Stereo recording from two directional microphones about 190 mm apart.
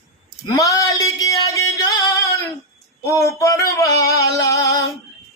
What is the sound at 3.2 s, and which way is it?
Male singing, 15° left (ahead or behind).